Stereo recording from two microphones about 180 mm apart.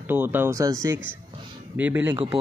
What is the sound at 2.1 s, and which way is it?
Speech, 30° right (ahead or behind).